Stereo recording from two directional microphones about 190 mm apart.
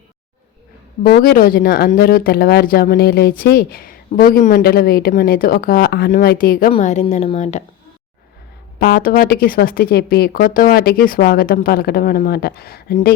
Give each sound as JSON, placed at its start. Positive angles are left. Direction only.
{"t": 1.0, "sound": "speech", "side_deg": 50}
{"t": 6.7, "sound": "speech", "side_deg": 35}
{"t": 8.8, "sound": "speech", "side_deg": 50}